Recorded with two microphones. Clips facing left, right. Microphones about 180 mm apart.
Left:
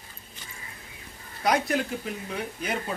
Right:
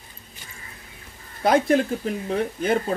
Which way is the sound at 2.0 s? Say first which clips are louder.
Right 8 dB; 35° right (ahead or behind).